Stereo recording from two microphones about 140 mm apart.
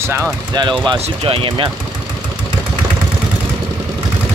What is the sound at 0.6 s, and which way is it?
Speech, 35° right (ahead or behind).